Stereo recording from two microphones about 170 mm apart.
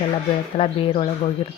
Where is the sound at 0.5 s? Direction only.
35° left (ahead or behind).